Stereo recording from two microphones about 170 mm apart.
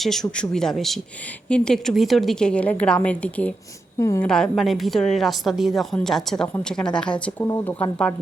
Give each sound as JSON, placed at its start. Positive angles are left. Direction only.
{"t": 0.0, "sound": "a woman's voice", "side_deg": 0}
{"t": 3.9, "sound": "speech", "side_deg": 20}
{"t": 4.5, "sound": "a woman's voice", "side_deg": 0}